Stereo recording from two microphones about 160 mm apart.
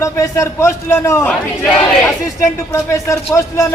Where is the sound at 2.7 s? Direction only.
20° left (ahead or behind).